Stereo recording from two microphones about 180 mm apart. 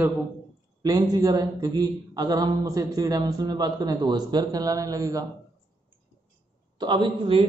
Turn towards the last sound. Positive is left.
turn(degrees=-30)  # may be behind; listen again after turning